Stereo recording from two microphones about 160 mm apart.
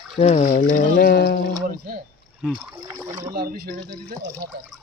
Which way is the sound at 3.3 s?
75° right (ahead or behind).